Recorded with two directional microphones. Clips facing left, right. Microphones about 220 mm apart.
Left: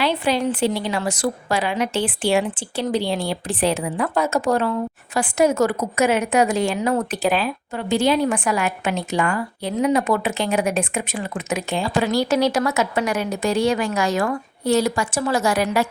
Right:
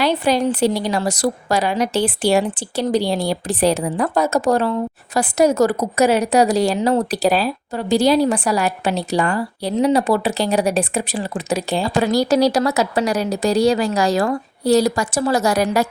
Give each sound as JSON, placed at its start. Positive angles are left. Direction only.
{"t": 0.0, "sound": "a woman's voice", "side_deg": -40}